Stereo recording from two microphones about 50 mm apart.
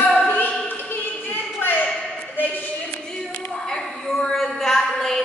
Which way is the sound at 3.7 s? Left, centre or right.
Centre.